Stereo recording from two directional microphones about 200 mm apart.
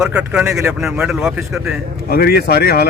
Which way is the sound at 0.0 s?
5° right (ahead or behind).